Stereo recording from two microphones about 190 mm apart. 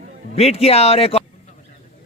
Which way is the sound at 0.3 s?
30° left (ahead or behind).